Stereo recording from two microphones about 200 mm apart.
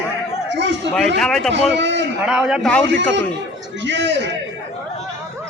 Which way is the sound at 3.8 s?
65° right (ahead or behind).